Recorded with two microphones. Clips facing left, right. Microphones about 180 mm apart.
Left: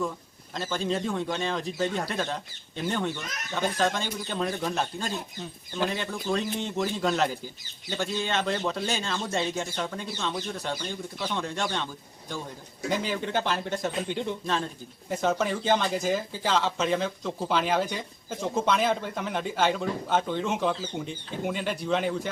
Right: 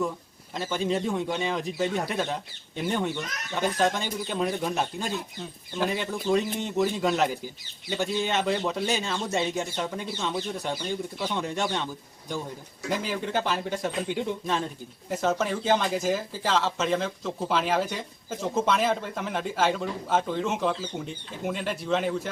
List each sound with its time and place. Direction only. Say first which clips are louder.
0.5 s speech: right 2 dB; 10° right (ahead or behind)
10.8 s speech: right 3 dB; 5° right (ahead or behind)
11.4 s speech: right 2 dB; 15° right (ahead or behind)
12.9 s speech: even; centre (ahead or behind)